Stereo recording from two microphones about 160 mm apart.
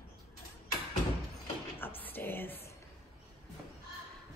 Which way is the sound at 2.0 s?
10° left (ahead or behind).